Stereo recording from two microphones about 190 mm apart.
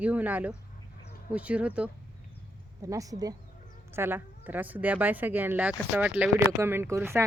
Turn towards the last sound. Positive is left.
turn(degrees=-15)  # may be behind; listen again after turning